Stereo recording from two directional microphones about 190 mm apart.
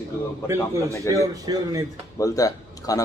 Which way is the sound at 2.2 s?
20° left (ahead or behind).